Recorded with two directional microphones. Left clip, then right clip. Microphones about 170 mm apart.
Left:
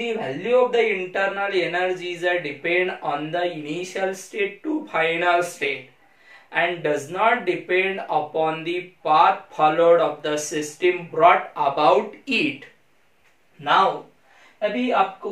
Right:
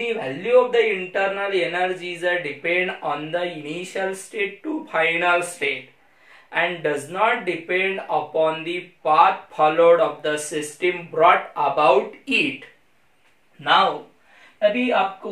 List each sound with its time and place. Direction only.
0.0 s speech: centre (ahead or behind)